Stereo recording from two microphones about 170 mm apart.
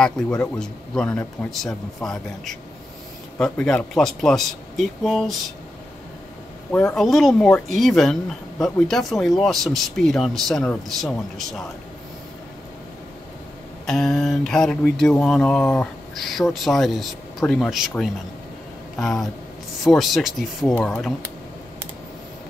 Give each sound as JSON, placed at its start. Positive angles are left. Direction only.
{"t": 0.4, "sound": "speech", "side_deg": 5}
{"t": 6.7, "sound": "a man's voice", "side_deg": 10}
{"t": 7.0, "sound": "speech", "side_deg": 0}
{"t": 13.8, "sound": "speech", "side_deg": 5}